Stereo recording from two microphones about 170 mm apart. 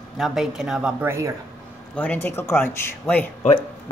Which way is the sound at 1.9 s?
10° left (ahead or behind).